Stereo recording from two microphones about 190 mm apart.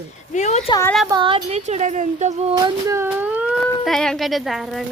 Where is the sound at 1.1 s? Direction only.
25° right (ahead or behind).